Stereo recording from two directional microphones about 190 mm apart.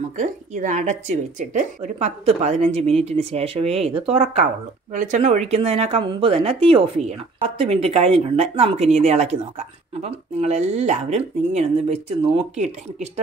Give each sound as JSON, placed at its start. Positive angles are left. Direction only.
{"t": 0.2, "sound": "speech", "side_deg": -40}